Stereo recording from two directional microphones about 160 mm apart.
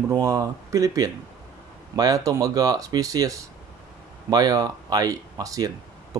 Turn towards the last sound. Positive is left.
turn(degrees=-25)  # may be behind; listen again after turning